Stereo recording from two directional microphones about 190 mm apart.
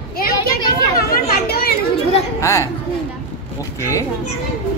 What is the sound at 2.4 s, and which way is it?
Speech, 15° left (ahead or behind).